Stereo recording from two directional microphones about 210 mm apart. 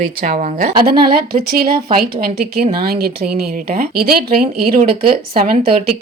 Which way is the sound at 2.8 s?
45° right (ahead or behind).